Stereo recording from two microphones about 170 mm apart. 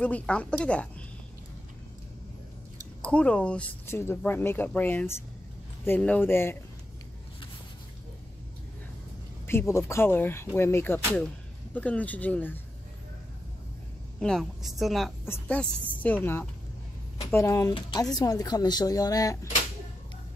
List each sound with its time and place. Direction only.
0.0 s speech: 5° left (ahead or behind)
3.0 s speech: 5° left (ahead or behind)
9.5 s speech: 15° left (ahead or behind)
14.2 s speech: centre (ahead or behind)
15.2 s speech: 10° left (ahead or behind)